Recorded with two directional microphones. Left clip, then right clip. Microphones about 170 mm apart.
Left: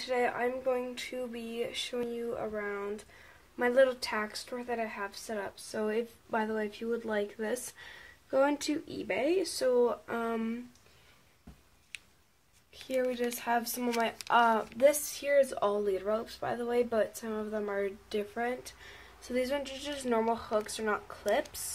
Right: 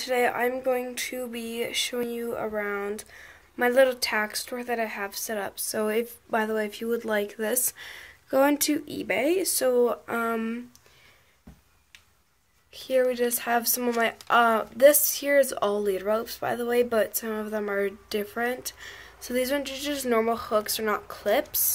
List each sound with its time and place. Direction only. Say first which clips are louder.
0.0 s a woman's voice: right 6 dB; 15° right (ahead or behind)
12.8 s a woman's voice: right 8 dB; 15° right (ahead or behind)